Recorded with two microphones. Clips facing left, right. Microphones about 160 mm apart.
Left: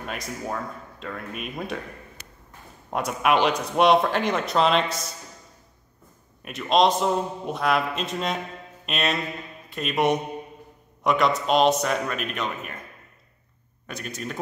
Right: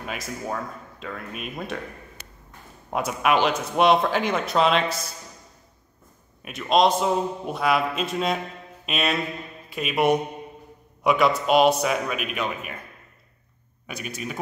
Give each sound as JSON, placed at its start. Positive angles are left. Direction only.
{"t": 0.0, "sound": "a man's voice", "side_deg": 0}
{"t": 2.9, "sound": "a man's voice", "side_deg": 0}
{"t": 6.4, "sound": "a man's voice", "side_deg": 0}
{"t": 8.8, "sound": "music", "side_deg": -5}
{"t": 9.7, "sound": "a man's voice", "side_deg": -5}
{"t": 13.8, "sound": "speech", "side_deg": -10}